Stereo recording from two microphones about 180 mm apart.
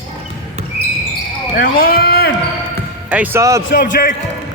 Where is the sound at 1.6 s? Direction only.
55° left (ahead or behind).